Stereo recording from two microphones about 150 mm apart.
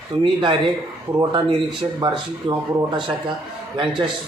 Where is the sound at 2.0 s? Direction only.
30° right (ahead or behind).